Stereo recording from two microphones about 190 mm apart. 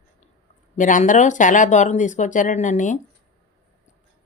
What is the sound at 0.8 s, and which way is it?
Speech, 40° left (ahead or behind).